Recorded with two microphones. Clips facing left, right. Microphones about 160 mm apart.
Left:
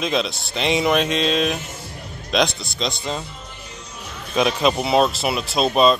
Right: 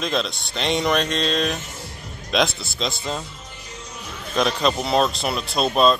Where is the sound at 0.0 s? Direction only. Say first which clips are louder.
Left 2 dB; centre (ahead or behind).